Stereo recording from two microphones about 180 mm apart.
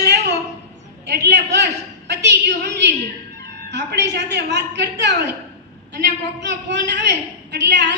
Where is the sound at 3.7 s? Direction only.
70° right (ahead or behind).